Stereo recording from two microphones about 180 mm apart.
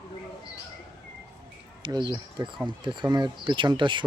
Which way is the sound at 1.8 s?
25° right (ahead or behind).